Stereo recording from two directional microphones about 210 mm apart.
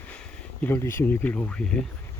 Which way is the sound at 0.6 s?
10° left (ahead or behind).